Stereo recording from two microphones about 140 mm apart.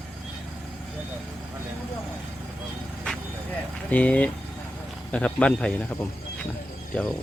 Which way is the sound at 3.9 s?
10° left (ahead or behind).